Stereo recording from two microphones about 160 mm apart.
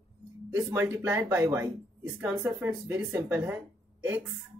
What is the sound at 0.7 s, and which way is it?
Speech, 10° right (ahead or behind).